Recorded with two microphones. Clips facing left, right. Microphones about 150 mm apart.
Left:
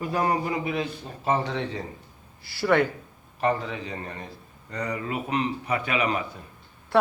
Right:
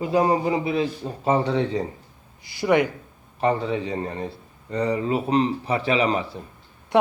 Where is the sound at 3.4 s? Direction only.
30° right (ahead or behind).